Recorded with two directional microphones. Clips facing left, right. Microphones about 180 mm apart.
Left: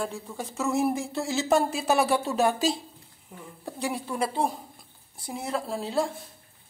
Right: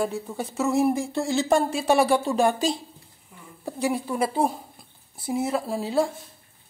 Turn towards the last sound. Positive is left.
turn(degrees=0)  # may be behind; listen again after turning